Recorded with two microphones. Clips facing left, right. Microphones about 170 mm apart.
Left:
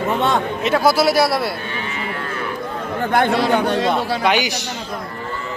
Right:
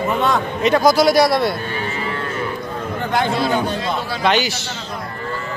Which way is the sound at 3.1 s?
60° left (ahead or behind).